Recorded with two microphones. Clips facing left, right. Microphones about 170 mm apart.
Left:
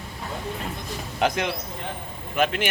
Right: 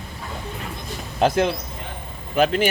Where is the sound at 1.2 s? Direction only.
30° right (ahead or behind).